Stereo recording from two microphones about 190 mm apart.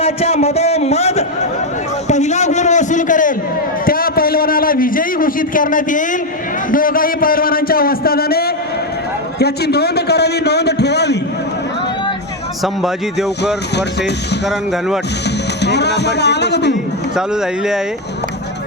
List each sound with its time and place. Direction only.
0.0 s a man's voice: 35° left (ahead or behind)
2.0 s a sound: 35° left (ahead or behind)
3.8 s a man's voice: 50° left (ahead or behind)
12.6 s a man's voice: centre (ahead or behind)
15.6 s a man's voice: 65° left (ahead or behind)